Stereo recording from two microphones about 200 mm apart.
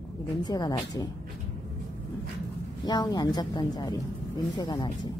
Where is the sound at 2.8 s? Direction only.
20° left (ahead or behind).